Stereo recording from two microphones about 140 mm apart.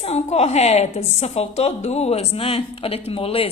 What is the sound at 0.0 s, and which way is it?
A woman's voice, 50° left (ahead or behind).